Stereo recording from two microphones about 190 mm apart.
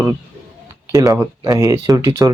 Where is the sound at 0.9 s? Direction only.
15° right (ahead or behind).